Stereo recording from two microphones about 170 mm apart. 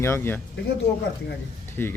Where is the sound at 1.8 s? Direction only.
15° left (ahead or behind).